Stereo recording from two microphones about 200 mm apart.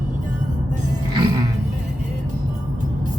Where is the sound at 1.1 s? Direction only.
20° right (ahead or behind).